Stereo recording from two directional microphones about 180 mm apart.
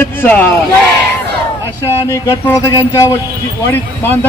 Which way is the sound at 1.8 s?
15° left (ahead or behind).